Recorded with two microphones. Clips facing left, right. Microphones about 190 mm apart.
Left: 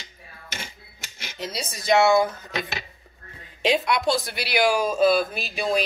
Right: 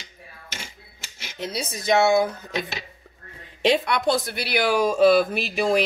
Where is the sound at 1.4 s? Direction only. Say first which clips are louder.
Right 3 dB; 60° right (ahead or behind).